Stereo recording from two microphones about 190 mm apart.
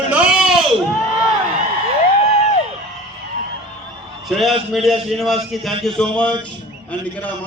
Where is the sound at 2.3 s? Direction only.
35° left (ahead or behind).